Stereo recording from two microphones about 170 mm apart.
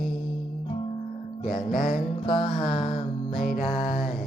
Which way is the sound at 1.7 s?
60° left (ahead or behind).